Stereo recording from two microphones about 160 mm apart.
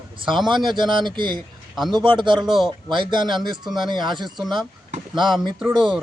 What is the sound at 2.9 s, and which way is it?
Speech, 30° right (ahead or behind).